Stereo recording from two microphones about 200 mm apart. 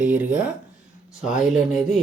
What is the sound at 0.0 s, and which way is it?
Speech, 5° right (ahead or behind).